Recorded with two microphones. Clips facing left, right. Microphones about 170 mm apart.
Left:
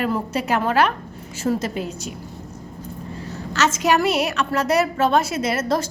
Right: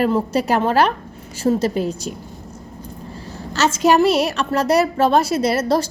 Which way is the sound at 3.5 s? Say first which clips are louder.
Right 4 dB; 30° right (ahead or behind).